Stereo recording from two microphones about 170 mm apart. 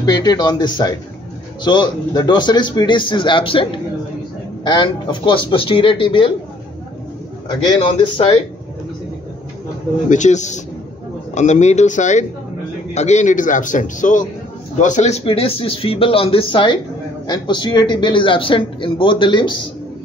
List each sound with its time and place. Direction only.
0.0 s a man's voice: 25° left (ahead or behind)
10.0 s a man's voice: 45° left (ahead or behind); by 19.5 s 30° left (ahead or behind)